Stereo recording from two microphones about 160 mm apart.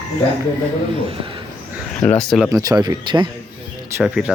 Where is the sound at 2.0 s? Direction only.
5° left (ahead or behind).